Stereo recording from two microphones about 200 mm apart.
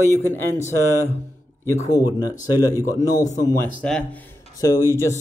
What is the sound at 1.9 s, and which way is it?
Speech, 20° left (ahead or behind).